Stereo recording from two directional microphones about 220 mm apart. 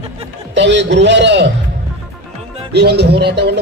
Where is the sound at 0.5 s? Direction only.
55° right (ahead or behind).